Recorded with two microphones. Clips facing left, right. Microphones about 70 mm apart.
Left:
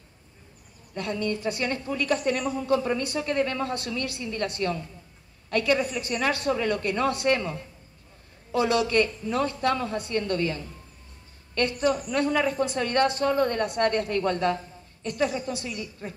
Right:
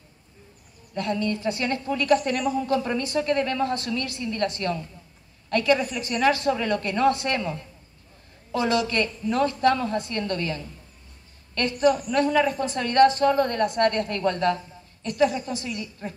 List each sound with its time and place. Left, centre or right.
0.9 s a woman's voice: centre
2.4 s a woman's voice: centre
2.7 s a woman's voice: centre
6.1 s a woman's voice: centre
8.5 s a woman's voice: centre